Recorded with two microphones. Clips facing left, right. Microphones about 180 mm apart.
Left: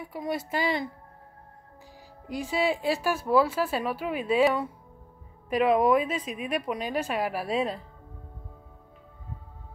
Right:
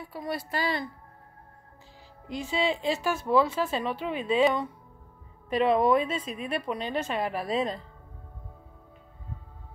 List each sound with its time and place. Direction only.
0.0 s a woman's voice: 20° left (ahead or behind)
2.2 s a woman's voice: 10° left (ahead or behind)